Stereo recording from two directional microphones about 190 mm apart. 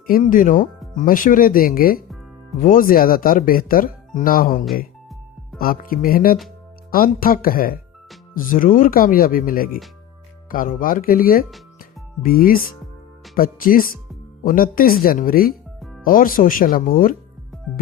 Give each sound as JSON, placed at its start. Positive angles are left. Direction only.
{"t": 0.1, "sound": "speech", "side_deg": 45}
{"t": 11.8, "sound": "music", "side_deg": 50}
{"t": 13.3, "sound": "speech", "side_deg": 50}
{"t": 15.8, "sound": "music", "side_deg": 0}
{"t": 16.0, "sound": "speech", "side_deg": 45}